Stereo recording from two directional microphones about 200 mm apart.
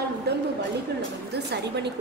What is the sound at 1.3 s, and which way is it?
Speech, 55° right (ahead or behind).